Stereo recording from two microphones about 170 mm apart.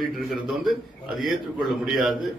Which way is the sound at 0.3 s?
Centre (ahead or behind).